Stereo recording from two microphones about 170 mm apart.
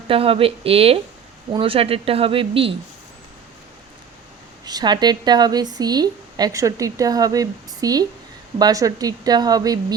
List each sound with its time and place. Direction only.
0.1 s speech: 35° right (ahead or behind)
4.6 s speech: 25° right (ahead or behind)